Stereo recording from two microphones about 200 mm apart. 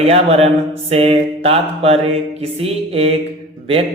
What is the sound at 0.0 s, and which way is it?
Speech, 30° right (ahead or behind).